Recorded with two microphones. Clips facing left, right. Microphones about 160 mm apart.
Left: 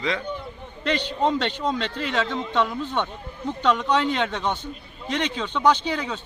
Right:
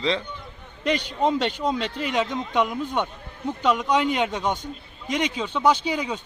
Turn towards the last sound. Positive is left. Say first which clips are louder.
# even
turn(degrees=-10)  # may be behind; listen again after turning